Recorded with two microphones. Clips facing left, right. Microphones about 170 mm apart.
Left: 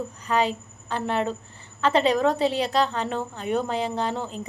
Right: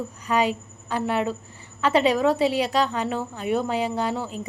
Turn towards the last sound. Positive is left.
turn(degrees=-5)  # may be behind; listen again after turning